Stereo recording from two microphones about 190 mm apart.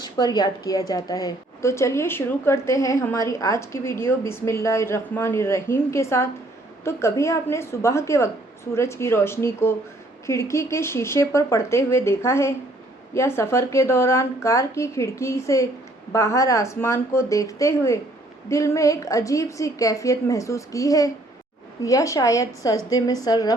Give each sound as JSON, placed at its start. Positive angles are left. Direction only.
{"t": 0.0, "sound": "a woman's voice", "side_deg": 20}